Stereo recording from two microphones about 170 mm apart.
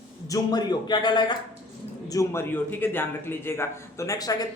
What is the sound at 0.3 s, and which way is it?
A man's voice, 20° left (ahead or behind).